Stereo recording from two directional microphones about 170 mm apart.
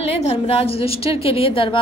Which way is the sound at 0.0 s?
35° left (ahead or behind).